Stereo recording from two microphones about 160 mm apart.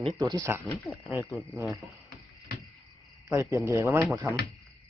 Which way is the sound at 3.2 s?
20° right (ahead or behind).